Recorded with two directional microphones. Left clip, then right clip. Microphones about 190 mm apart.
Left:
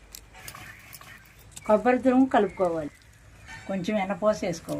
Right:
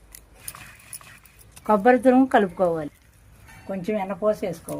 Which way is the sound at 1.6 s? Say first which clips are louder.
Right 4 dB; 45° right (ahead or behind).